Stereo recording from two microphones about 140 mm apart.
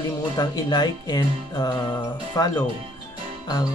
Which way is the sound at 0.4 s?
30° left (ahead or behind).